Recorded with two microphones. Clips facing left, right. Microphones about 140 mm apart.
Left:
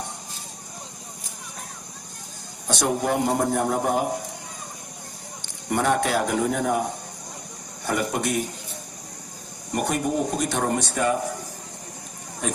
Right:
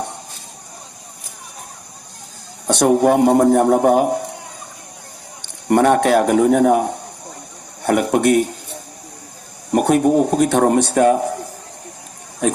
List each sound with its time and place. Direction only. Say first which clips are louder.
2.6 s a man's voice: right 10 dB; 65° right (ahead or behind)
5.6 s a man's voice: right 9 dB; 60° right (ahead or behind)
9.7 s a man's voice: right 10 dB; 60° right (ahead or behind)